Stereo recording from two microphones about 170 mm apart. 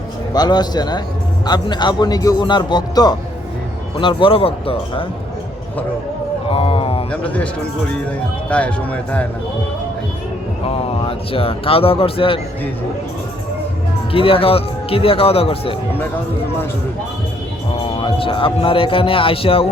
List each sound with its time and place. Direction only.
0.3 s a man's voice: 25° left (ahead or behind)
6.5 s a sound: 35° left (ahead or behind)
7.1 s speech: 5° left (ahead or behind)
10.7 s speech: 35° left (ahead or behind)
14.1 s speech: 35° left (ahead or behind)
17.8 s speech: 30° left (ahead or behind)